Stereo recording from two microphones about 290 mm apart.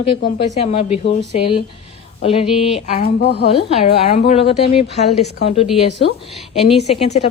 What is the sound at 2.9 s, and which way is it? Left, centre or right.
Speech, left.